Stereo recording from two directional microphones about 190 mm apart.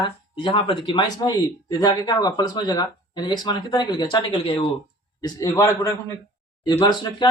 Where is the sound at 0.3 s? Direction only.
25° left (ahead or behind).